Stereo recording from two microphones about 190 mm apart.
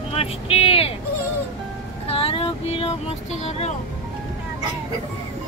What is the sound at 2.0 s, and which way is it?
Child singing, 30° left (ahead or behind).